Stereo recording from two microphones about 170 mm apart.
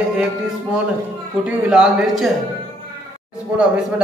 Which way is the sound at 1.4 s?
5° right (ahead or behind).